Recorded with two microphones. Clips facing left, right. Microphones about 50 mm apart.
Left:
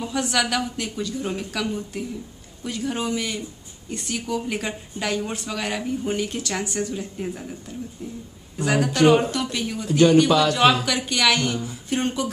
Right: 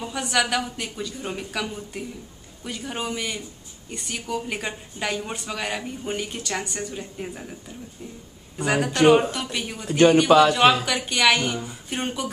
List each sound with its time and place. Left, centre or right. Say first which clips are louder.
0.0 s speech: left 1 dB; centre
8.5 s speech: left 1 dB; centre
9.8 s speech: even; right
10.1 s speech: right 1 dB; centre